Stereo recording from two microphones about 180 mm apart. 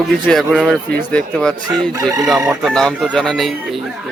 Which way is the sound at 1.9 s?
20° right (ahead or behind).